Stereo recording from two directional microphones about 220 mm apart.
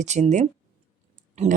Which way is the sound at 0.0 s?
30° right (ahead or behind).